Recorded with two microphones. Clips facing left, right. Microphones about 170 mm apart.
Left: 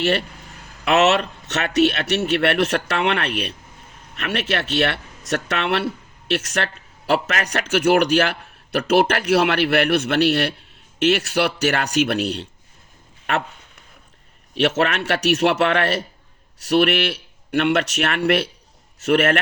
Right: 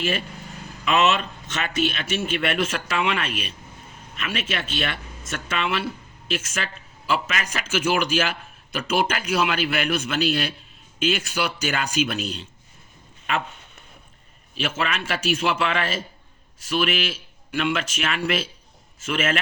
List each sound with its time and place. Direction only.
0.0 s a man's voice: 75° left (ahead or behind)
14.5 s a man's voice: 70° left (ahead or behind)